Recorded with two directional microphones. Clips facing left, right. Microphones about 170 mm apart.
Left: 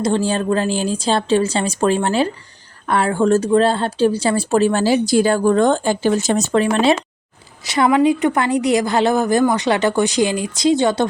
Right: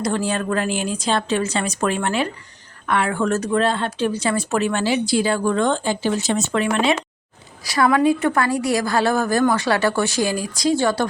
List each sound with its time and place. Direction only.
0.0 s speech: 30° left (ahead or behind)
7.6 s a woman's voice: 20° left (ahead or behind)